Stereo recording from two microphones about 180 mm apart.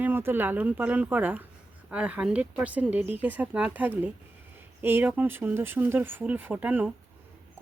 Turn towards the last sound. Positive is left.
turn(degrees=-10)  # may be behind; listen again after turning